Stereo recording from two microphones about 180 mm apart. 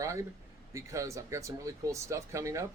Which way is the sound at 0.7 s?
15° right (ahead or behind).